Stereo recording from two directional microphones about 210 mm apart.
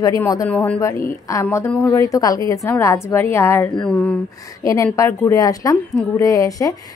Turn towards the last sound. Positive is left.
turn(degrees=15)  # may be behind; listen again after turning